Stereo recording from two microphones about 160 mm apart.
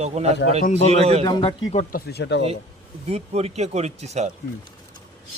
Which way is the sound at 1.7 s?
45° left (ahead or behind).